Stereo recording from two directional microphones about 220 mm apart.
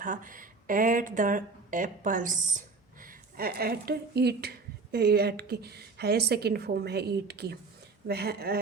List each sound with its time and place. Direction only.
0.0 s speech: 35° right (ahead or behind)